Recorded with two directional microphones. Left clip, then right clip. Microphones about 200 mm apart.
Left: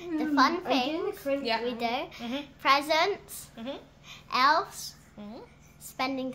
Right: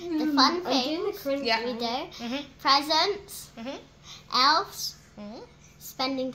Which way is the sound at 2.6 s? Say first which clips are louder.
Right 1 dB; 5° left (ahead or behind).